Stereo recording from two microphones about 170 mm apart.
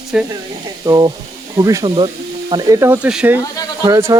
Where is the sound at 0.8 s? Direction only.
20° right (ahead or behind).